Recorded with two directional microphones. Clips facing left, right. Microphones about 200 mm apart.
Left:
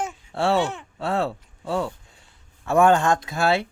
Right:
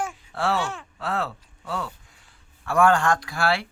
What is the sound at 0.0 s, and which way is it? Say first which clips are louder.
Speech: left 3 dB; 25° left (ahead or behind).